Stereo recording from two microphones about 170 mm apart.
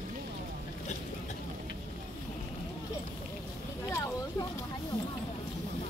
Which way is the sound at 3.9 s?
20° left (ahead or behind).